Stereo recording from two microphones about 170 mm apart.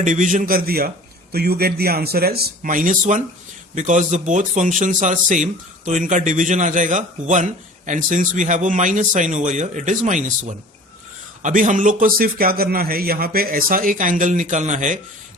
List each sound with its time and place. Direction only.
0.0 s a man's voice: 50° right (ahead or behind)